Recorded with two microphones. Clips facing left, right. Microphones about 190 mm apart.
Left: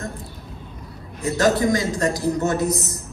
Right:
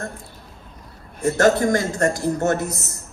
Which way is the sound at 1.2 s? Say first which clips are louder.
Right 2 dB; 55° right (ahead or behind).